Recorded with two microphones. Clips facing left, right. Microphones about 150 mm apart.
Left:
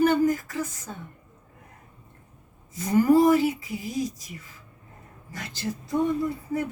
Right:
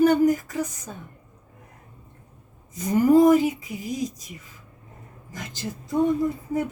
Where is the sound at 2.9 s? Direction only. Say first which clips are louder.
Right 2 dB; 20° right (ahead or behind).